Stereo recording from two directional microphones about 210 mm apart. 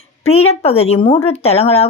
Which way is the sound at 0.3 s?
30° left (ahead or behind).